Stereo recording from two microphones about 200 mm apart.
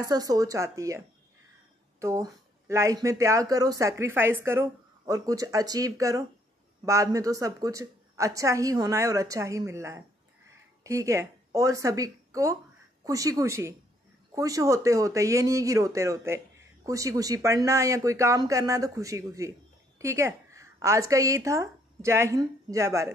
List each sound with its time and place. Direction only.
0.0 s a woman's voice: 20° right (ahead or behind)